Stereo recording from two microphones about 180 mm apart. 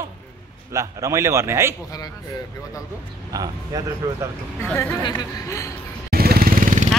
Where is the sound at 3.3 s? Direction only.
20° right (ahead or behind).